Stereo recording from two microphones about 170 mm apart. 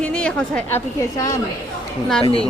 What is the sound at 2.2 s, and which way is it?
Speech, 35° left (ahead or behind).